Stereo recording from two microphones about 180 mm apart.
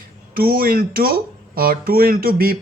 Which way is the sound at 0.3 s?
55° right (ahead or behind).